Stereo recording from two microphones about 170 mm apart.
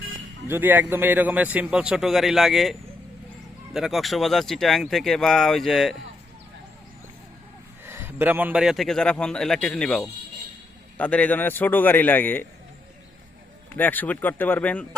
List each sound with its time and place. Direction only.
0.4 s a man's voice: 10° right (ahead or behind)
7.9 s a man's voice: 15° right (ahead or behind); by 12.5 s 10° left (ahead or behind)
13.7 s a man's voice: 10° left (ahead or behind)